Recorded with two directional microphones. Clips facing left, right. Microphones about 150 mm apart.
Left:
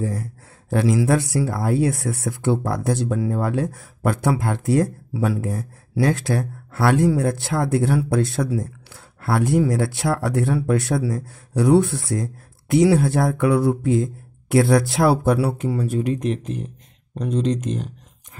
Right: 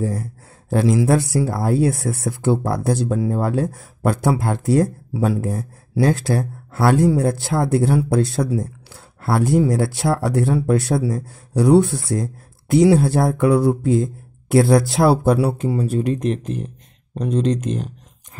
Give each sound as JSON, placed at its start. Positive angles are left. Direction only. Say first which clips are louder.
{"t": 0.9, "sound": "speech", "louder": "right 2 dB", "side_deg": -30}
{"t": 16.0, "sound": "speech", "louder": "right 2 dB", "side_deg": -40}